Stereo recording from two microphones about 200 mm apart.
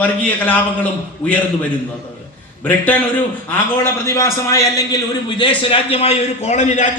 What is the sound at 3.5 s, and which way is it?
A man's voice, 10° left (ahead or behind).